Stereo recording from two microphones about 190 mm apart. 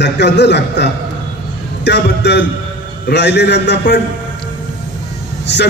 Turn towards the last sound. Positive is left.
turn(degrees=65)  # may be behind; listen again after turning